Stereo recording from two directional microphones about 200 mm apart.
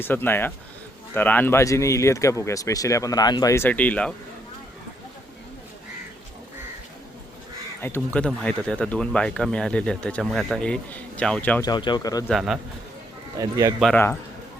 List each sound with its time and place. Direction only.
0.0 s speech: 10° left (ahead or behind)
7.8 s speech: 10° left (ahead or behind)
11.6 s speech: 20° left (ahead or behind)
12.3 s speech: centre (ahead or behind)
13.4 s speech: 15° right (ahead or behind)
13.7 s speech: centre (ahead or behind)